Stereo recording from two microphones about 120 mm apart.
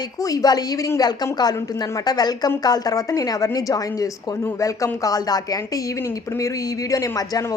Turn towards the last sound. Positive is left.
turn(degrees=30)  # may be behind; listen again after turning